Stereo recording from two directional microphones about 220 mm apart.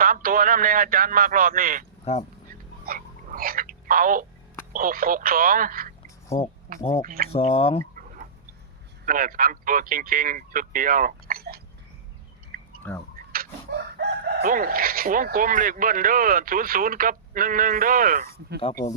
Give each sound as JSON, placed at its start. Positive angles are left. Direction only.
{"t": 0.0, "sound": "speech", "side_deg": -40}
{"t": 2.5, "sound": "telephone", "side_deg": -40}
{"t": 4.7, "sound": "speech", "side_deg": -40}
{"t": 7.3, "sound": "speech", "side_deg": 25}
{"t": 9.0, "sound": "speech", "side_deg": -40}
{"t": 12.8, "sound": "speech", "side_deg": 10}
{"t": 13.3, "sound": "a sound", "side_deg": -40}
{"t": 14.3, "sound": "speech", "side_deg": -45}